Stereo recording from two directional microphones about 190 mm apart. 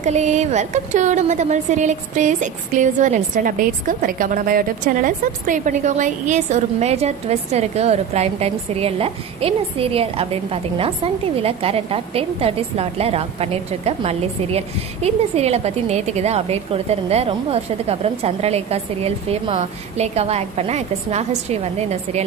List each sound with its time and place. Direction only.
0.0 s a woman's voice: 40° right (ahead or behind)